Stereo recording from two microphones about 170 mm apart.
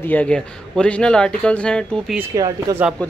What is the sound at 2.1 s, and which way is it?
Speech, 15° right (ahead or behind).